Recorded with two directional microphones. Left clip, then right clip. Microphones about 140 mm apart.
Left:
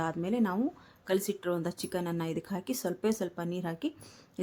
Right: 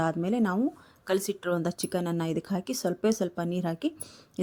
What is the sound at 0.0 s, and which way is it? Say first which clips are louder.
A woman's voice: right 4 dB; 30° right (ahead or behind).